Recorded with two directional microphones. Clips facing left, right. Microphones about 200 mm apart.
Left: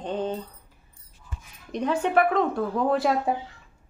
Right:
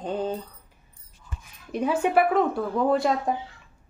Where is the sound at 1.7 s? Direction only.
5° right (ahead or behind).